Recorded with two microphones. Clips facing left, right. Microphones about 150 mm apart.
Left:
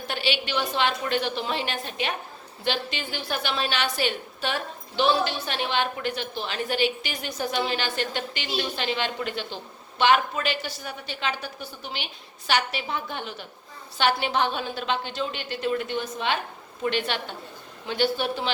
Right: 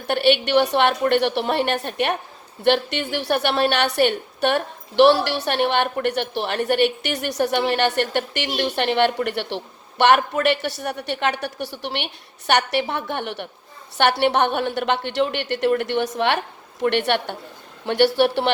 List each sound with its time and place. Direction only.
0.0 s a woman's voice: 60° right (ahead or behind)